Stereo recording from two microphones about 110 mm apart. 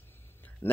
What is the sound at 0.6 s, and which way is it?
Speech, 20° left (ahead or behind).